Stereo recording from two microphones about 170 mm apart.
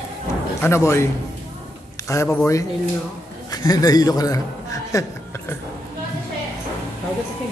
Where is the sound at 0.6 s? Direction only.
15° left (ahead or behind).